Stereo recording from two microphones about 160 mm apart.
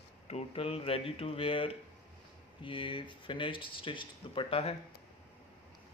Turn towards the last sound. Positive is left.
turn(degrees=35)  # may be behind; listen again after turning